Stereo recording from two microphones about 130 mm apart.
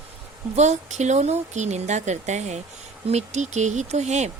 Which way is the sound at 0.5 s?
60° right (ahead or behind).